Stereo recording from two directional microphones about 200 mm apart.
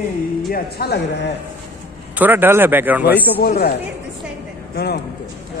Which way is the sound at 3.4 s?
50° left (ahead or behind).